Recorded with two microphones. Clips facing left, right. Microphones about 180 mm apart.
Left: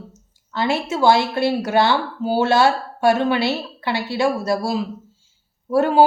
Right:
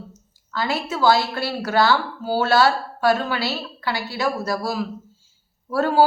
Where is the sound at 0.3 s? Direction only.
25° left (ahead or behind).